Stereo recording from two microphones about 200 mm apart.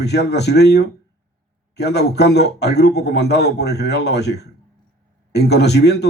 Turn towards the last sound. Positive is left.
turn(degrees=55)  # may be behind; listen again after turning